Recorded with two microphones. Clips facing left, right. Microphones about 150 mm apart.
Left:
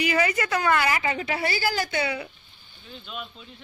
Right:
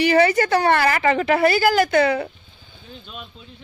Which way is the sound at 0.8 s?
60° right (ahead or behind).